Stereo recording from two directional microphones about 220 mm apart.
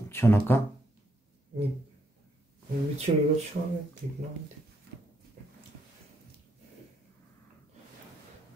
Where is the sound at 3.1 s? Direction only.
25° right (ahead or behind).